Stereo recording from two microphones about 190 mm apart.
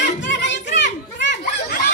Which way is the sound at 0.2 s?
70° left (ahead or behind).